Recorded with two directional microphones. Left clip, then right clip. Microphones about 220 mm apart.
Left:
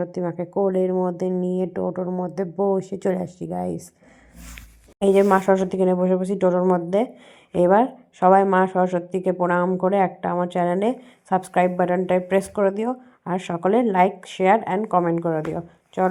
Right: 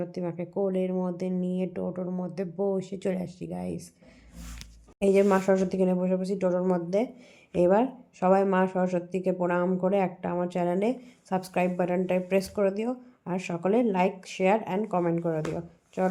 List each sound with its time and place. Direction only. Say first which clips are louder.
0.0 s a woman's voice: left 7 dB; 15° left (ahead or behind)
4.9 s a woman's voice: left 6 dB; 15° left (ahead or behind)